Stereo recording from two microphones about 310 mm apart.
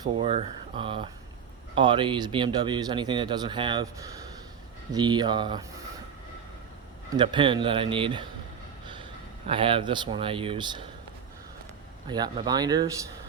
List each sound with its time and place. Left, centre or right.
0.0 s speech: centre
4.9 s speech: centre
7.1 s speech: centre
9.5 s speech: centre
12.0 s speech: centre